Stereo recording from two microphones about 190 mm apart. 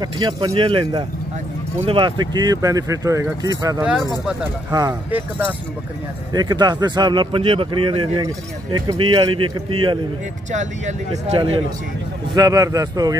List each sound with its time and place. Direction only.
0.0 s speech: 20° right (ahead or behind)
6.3 s speech: 20° right (ahead or behind)
10.5 s speech: 40° right (ahead or behind)
12.4 s speech: 20° right (ahead or behind)